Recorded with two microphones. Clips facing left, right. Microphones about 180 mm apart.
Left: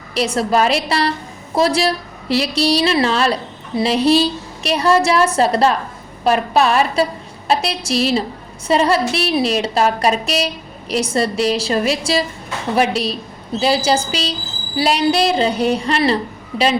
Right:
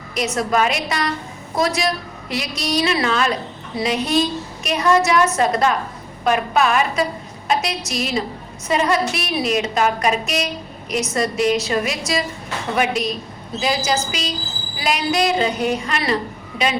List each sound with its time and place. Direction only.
0.1 s a woman's voice: 30° left (ahead or behind)